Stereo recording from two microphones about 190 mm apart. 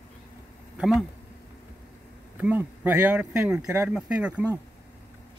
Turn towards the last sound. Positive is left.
turn(degrees=-10)  # may be behind; listen again after turning